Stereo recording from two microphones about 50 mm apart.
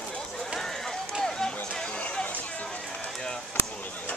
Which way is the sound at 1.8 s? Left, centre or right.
Left.